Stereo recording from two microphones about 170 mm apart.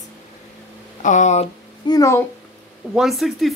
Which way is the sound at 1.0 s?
45° left (ahead or behind).